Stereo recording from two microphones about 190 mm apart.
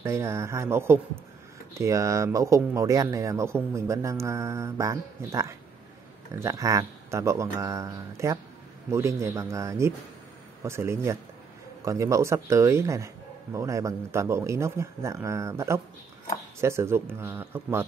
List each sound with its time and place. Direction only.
0.0 s speech: 15° right (ahead or behind)